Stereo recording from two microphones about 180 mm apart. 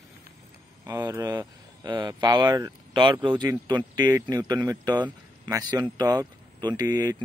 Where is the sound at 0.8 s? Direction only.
15° right (ahead or behind).